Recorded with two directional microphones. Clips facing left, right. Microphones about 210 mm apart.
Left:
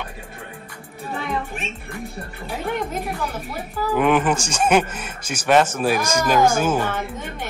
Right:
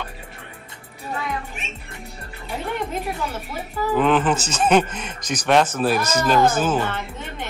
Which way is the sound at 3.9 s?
10° left (ahead or behind).